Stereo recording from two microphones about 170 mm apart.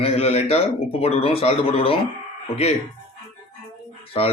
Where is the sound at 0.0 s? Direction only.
35° left (ahead or behind).